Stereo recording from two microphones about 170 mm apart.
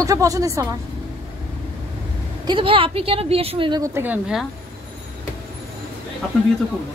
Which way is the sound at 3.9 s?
10° right (ahead or behind).